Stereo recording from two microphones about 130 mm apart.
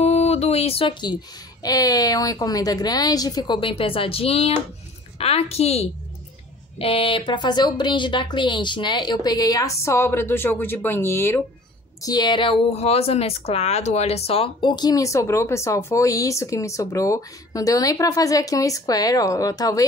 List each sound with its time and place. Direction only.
0.0 s a sound: 55° left (ahead or behind)
1.6 s a woman's voice: 30° left (ahead or behind)
12.0 s speech: 30° left (ahead or behind)
12.6 s speech: 50° left (ahead or behind); by 19.8 s 25° left (ahead or behind)